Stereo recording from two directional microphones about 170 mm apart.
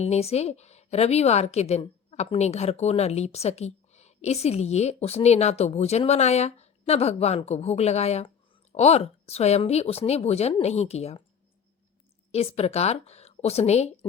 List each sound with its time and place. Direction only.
0.0 s a woman's voice: 40° left (ahead or behind)
12.3 s a woman's voice: 40° left (ahead or behind)